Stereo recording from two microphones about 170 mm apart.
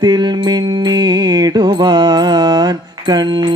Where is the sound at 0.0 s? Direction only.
25° right (ahead or behind).